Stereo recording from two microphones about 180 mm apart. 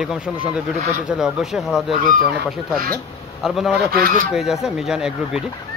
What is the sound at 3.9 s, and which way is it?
Speech, 50° right (ahead or behind).